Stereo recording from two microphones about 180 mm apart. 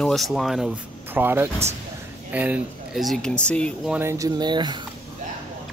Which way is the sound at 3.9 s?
15° right (ahead or behind).